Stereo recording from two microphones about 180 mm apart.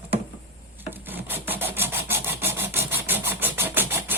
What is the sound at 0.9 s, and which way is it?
Filing, 10° right (ahead or behind).